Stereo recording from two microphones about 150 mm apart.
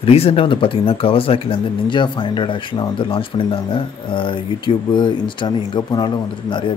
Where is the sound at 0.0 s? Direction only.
40° left (ahead or behind).